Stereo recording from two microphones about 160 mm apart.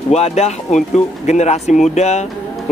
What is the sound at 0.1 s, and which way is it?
Speech, 45° left (ahead or behind).